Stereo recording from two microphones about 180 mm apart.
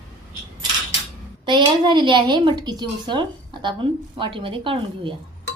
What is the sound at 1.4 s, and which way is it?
A woman's voice, 25° right (ahead or behind).